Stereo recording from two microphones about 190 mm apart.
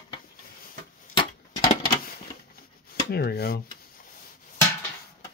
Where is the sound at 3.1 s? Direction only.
55° left (ahead or behind).